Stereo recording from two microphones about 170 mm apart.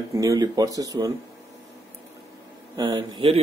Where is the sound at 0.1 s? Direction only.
20° right (ahead or behind).